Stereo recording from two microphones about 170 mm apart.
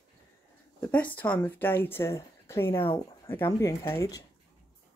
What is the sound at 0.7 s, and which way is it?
Speech, 10° left (ahead or behind).